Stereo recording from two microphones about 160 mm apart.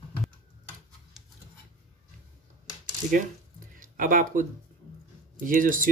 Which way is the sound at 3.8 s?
60° right (ahead or behind).